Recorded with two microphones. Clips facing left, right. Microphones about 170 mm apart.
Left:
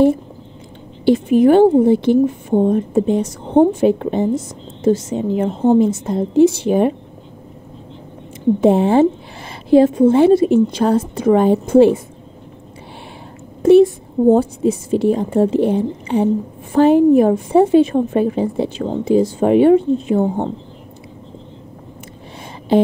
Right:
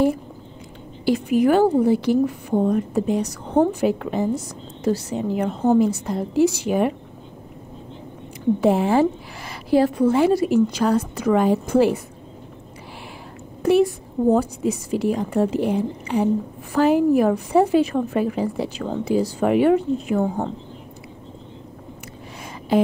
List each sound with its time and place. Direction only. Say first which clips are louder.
1.0 s a woman's voice: left 6 dB; 25° left (ahead or behind)
8.5 s a woman's voice: left 5 dB; 25° left (ahead or behind)
13.6 s a woman's voice: left 8 dB; 25° left (ahead or behind)
22.7 s a sound: left 5 dB; 25° left (ahead or behind)